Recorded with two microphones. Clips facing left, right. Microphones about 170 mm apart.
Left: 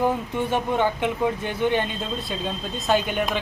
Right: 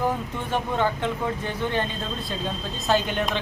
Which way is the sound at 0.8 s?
15° left (ahead or behind).